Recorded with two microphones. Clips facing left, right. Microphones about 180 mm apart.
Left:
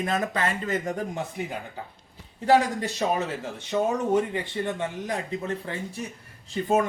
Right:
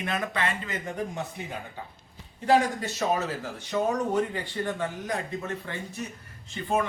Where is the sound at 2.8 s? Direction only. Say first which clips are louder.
Left 1 dB; 30° left (ahead or behind).